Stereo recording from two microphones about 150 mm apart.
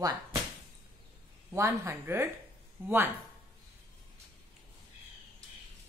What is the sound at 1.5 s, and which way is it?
Speech, 20° right (ahead or behind).